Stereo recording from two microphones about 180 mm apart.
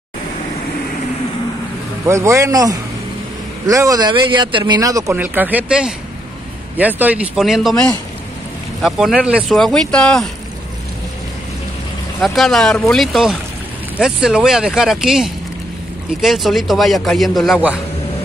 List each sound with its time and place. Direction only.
2.0 s a man's voice: 15° right (ahead or behind); by 10.2 s 5° left (ahead or behind)
12.2 s a man's voice: centre (ahead or behind)